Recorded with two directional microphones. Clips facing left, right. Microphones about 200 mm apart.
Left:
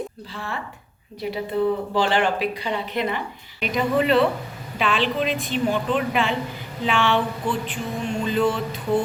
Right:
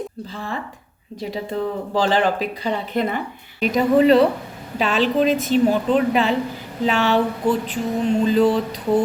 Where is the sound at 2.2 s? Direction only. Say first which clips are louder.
Right 2 dB; 35° right (ahead or behind).